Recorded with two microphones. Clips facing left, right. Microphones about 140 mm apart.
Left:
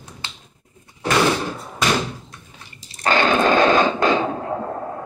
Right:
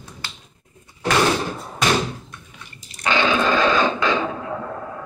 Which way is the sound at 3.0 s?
45° left (ahead or behind).